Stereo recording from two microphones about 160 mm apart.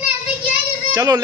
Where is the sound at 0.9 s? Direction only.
25° right (ahead or behind).